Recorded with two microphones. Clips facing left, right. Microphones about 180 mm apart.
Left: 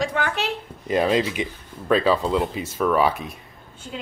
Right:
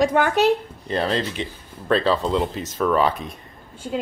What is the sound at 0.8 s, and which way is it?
Speech, 10° left (ahead or behind).